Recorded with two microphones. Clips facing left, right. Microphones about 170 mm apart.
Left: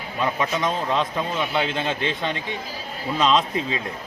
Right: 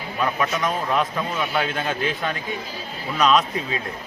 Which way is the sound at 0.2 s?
25° left (ahead or behind).